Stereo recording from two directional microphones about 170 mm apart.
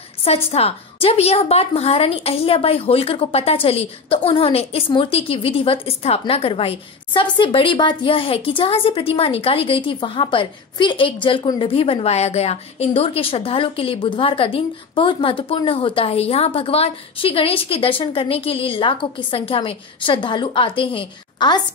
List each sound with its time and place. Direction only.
0.2 s a woman's voice: 35° left (ahead or behind)